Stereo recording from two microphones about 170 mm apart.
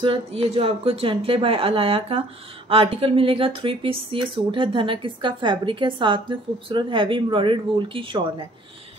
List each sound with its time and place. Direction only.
0.0 s speech: 30° right (ahead or behind)